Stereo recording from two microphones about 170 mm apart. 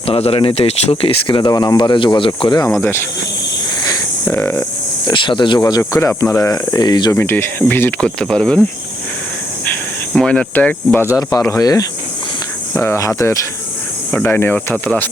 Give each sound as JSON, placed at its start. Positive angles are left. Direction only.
{"t": 0.0, "sound": "speech", "side_deg": 35}
{"t": 3.8, "sound": "a sound", "side_deg": 15}
{"t": 5.0, "sound": "speech", "side_deg": 30}
{"t": 7.2, "sound": "speech", "side_deg": 15}
{"t": 10.2, "sound": "speech", "side_deg": 5}